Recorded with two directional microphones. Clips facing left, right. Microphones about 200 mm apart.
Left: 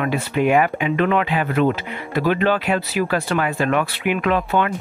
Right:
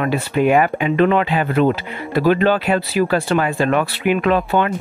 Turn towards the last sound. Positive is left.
turn(degrees=-35)  # may be behind; listen again after turning